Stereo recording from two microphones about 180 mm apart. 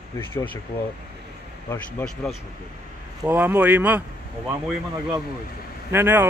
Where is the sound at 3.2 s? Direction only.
10° right (ahead or behind).